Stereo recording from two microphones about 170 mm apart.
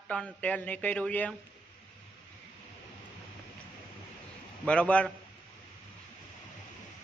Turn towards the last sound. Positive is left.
turn(degrees=5)  # may be behind; listen again after turning